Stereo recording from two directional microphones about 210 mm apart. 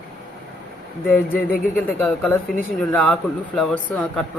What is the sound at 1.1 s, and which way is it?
Speech, 10° left (ahead or behind).